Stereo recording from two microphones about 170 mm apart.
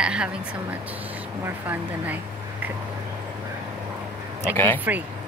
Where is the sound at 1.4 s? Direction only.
10° right (ahead or behind).